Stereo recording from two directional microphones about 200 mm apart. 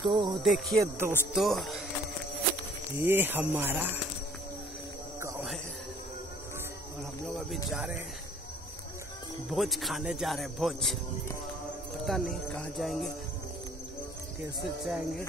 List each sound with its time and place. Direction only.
0.0 s music: 25° right (ahead or behind)
0.4 s speech: centre (ahead or behind)
3.0 s speech: 10° right (ahead or behind)
7.3 s speech: 5° right (ahead or behind)
9.5 s speech: centre (ahead or behind)
12.1 s speech: 5° left (ahead or behind)
14.8 s speech: 5° right (ahead or behind)